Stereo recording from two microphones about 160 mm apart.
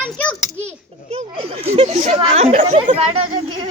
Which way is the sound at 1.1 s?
35° right (ahead or behind).